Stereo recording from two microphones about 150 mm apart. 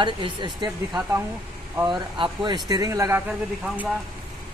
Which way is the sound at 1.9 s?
30° right (ahead or behind).